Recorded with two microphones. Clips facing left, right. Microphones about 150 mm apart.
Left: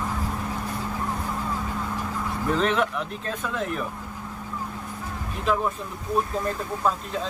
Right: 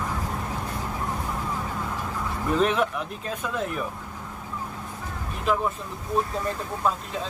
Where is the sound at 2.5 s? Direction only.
5° right (ahead or behind).